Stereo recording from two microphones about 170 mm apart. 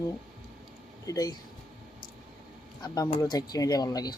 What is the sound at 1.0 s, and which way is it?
Speech, 20° left (ahead or behind).